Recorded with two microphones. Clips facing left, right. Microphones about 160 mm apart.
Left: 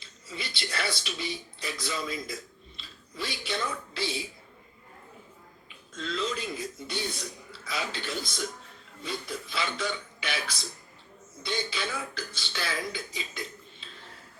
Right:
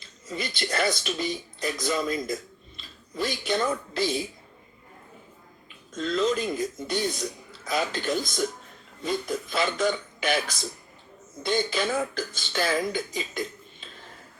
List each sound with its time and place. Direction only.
0.0 s speech: 45° right (ahead or behind)
5.6 s speech: 45° right (ahead or behind)